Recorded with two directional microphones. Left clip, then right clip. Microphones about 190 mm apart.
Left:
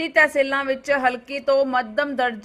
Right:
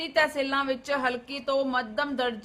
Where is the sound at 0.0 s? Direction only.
25° left (ahead or behind).